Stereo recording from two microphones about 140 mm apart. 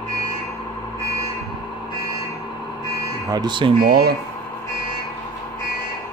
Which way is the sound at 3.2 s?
30° right (ahead or behind).